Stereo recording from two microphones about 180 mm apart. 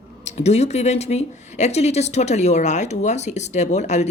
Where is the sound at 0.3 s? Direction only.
35° left (ahead or behind).